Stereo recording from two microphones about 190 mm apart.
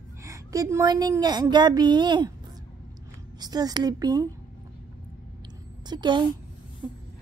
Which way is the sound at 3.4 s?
20° right (ahead or behind).